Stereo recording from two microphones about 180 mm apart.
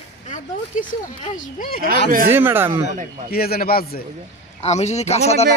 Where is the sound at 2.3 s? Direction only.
10° right (ahead or behind).